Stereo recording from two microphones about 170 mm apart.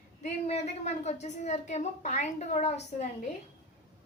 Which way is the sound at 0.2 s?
40° left (ahead or behind).